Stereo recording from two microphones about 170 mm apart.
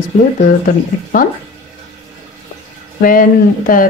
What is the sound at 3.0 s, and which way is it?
Speech, 55° left (ahead or behind).